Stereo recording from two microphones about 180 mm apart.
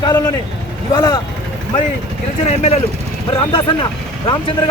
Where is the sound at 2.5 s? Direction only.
35° left (ahead or behind).